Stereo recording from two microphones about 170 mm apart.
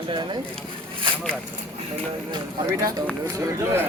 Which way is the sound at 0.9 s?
30° right (ahead or behind).